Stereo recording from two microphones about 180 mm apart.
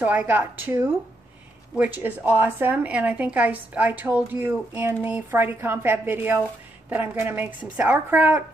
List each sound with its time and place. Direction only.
0.0 s speech: 10° right (ahead or behind)